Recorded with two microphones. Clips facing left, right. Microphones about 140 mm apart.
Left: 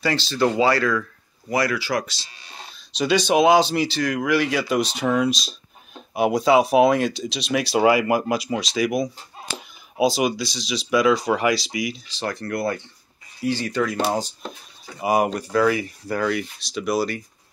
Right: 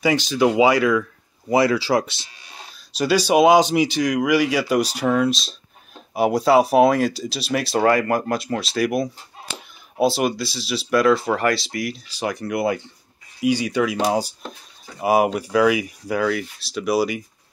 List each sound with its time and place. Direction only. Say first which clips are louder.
0.0 s speech: right 3 dB; 15° right (ahead or behind)
1.5 s speech: right 5 dB; 25° right (ahead or behind)
2.4 s speech: left 1 dB; 5° right (ahead or behind)
12.2 s speech: right 3 dB; 15° right (ahead or behind)